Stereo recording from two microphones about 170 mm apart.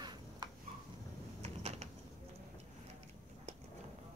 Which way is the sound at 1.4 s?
40° right (ahead or behind).